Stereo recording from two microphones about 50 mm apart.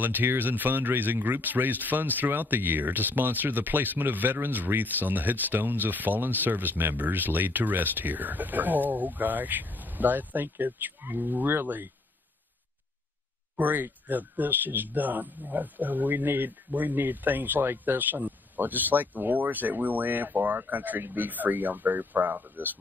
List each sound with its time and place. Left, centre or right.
0.0 s speech: right
13.6 s speech: right